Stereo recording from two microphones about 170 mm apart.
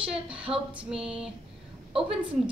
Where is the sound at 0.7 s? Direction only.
5° right (ahead or behind).